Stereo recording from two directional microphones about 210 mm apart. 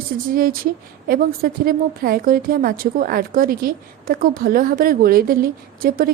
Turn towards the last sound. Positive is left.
turn(degrees=-45)  # may be behind; listen again after turning